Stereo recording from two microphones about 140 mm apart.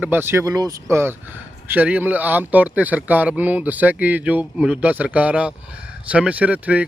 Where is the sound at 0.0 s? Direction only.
15° right (ahead or behind).